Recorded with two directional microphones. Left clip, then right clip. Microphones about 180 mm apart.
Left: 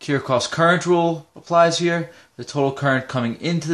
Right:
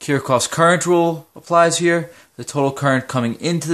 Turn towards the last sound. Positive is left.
turn(degrees=-45)  # may be behind; listen again after turning